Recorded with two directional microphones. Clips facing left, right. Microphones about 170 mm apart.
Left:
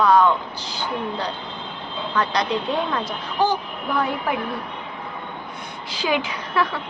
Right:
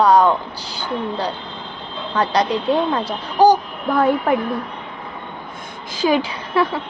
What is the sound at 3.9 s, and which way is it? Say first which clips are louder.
Speech: right 7 dB; 50° right (ahead or behind).